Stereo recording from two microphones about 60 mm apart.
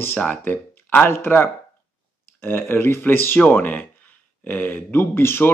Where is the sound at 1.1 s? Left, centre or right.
Left.